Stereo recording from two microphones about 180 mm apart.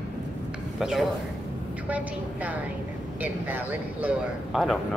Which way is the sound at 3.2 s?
10° right (ahead or behind).